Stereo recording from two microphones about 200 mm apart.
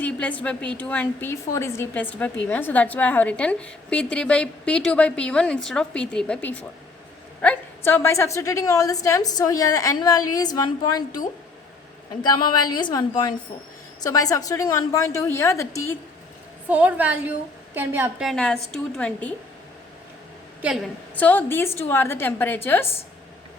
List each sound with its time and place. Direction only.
0.0 s a woman's voice: 5° left (ahead or behind)
12.2 s a woman's voice: 20° left (ahead or behind)
16.6 s a woman's voice: 10° right (ahead or behind)
18.3 s a woman's voice: 5° left (ahead or behind)
20.6 s a woman's voice: centre (ahead or behind)